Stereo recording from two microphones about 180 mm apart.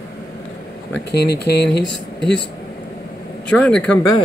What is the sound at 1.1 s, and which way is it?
Speech, 65° left (ahead or behind).